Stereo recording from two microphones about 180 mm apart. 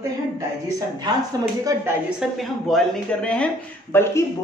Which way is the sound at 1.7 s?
20° right (ahead or behind).